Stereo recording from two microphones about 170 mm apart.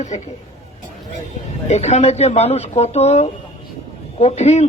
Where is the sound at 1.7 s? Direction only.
40° left (ahead or behind).